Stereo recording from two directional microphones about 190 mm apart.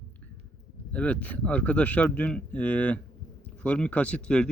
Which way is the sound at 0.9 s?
5° left (ahead or behind).